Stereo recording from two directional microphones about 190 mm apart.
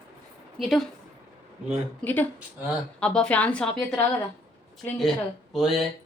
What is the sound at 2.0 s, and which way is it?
Speech, 10° left (ahead or behind).